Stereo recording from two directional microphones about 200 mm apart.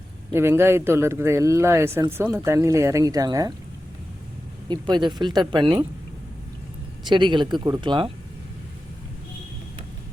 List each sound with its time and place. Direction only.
0.3 s speech: 10° right (ahead or behind)
4.7 s speech: 25° right (ahead or behind)
7.1 s speech: 25° right (ahead or behind)